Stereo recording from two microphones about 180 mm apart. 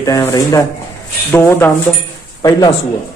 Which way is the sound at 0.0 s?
15° left (ahead or behind).